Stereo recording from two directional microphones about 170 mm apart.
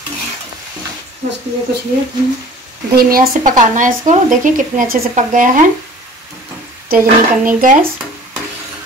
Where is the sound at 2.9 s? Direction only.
55° right (ahead or behind).